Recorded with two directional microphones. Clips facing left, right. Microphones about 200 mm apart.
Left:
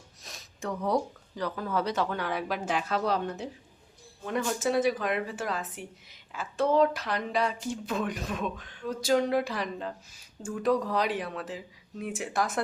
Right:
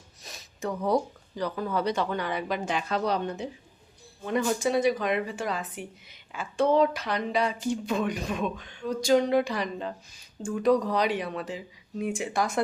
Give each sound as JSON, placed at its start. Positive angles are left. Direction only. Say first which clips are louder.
{"t": 0.2, "sound": "speech", "louder": "right 4 dB", "side_deg": 0}